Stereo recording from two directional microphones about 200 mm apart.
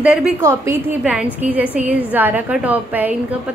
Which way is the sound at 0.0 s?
5° right (ahead or behind).